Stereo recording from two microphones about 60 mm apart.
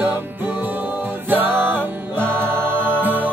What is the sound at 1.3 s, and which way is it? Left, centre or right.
Music, right.